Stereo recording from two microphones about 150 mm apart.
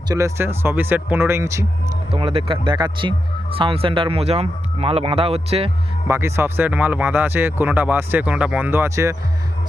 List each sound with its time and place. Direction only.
0.1 s speech: 20° right (ahead or behind)
2.0 s speech: 40° right (ahead or behind)
6.1 s speech: 15° right (ahead or behind)